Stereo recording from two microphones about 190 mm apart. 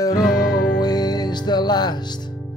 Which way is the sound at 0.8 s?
20° left (ahead or behind).